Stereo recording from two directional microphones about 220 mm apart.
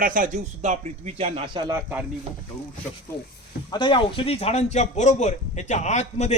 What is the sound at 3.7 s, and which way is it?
Speech, 20° left (ahead or behind).